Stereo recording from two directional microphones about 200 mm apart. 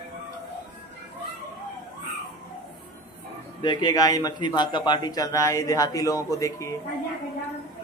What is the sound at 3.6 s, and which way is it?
Speech, 25° left (ahead or behind).